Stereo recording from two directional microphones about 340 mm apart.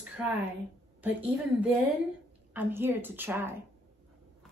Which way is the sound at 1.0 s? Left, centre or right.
Centre.